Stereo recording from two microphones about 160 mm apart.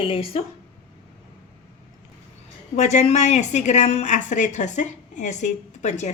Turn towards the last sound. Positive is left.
turn(degrees=45)  # may be behind; listen again after turning